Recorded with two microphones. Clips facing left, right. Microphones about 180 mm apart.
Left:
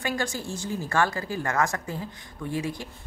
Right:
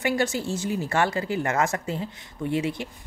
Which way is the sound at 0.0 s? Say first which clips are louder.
Right 5 dB; 20° right (ahead or behind).